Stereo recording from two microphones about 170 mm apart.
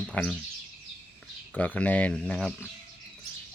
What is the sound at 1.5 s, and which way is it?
Speech, 10° left (ahead or behind).